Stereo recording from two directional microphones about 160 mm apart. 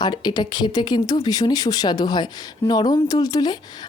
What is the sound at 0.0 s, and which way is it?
Speech, 25° left (ahead or behind).